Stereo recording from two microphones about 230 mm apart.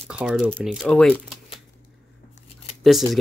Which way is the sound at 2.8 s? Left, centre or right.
Centre.